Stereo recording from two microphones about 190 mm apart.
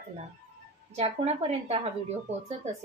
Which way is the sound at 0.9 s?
30° right (ahead or behind).